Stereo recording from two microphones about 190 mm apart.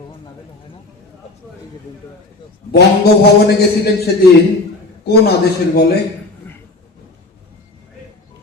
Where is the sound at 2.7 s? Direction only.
55° left (ahead or behind).